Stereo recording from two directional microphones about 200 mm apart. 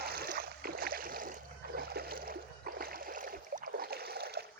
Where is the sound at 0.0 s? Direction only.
50° right (ahead or behind).